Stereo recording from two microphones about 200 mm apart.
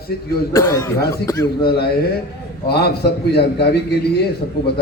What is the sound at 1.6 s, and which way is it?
A man's voice, 50° left (ahead or behind).